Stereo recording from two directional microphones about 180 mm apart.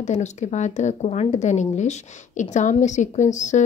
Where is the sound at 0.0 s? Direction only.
40° left (ahead or behind).